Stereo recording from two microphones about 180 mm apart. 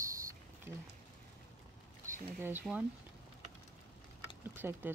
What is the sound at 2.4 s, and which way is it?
Speech, 10° right (ahead or behind).